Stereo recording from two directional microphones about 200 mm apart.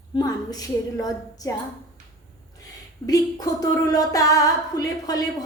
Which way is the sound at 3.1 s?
15° left (ahead or behind).